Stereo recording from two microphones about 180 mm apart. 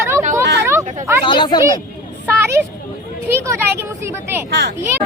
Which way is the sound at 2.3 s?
15° right (ahead or behind).